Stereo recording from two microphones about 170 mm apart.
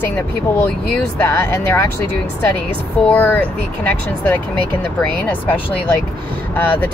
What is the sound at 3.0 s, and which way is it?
Speech, 10° left (ahead or behind).